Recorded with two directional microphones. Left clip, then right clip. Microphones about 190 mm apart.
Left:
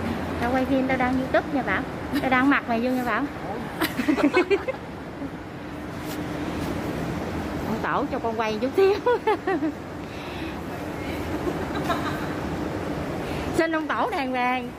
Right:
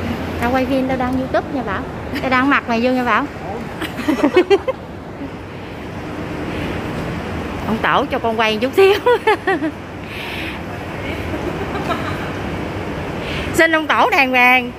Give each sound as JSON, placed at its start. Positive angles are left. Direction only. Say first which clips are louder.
{"t": 0.6, "sound": "speech", "louder": "right 4 dB", "side_deg": -5}
{"t": 4.0, "sound": "a sound", "louder": "right 7 dB", "side_deg": -20}
{"t": 7.8, "sound": "speech", "louder": "right 10 dB", "side_deg": -10}
{"t": 13.6, "sound": "speech", "louder": "right 11 dB", "side_deg": -15}